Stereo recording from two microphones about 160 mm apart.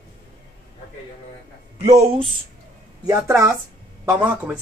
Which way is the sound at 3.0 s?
20° right (ahead or behind).